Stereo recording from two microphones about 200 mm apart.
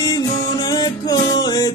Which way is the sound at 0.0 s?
20° left (ahead or behind).